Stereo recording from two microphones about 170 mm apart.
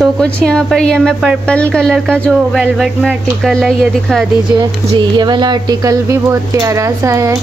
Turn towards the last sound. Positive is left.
turn(degrees=-15)  # may be behind; listen again after turning